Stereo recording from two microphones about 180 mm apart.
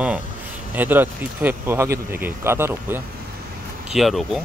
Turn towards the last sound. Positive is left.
turn(degrees=0)  # may be behind; listen again after turning